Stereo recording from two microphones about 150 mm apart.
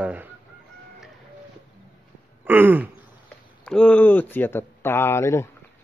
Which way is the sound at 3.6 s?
5° left (ahead or behind).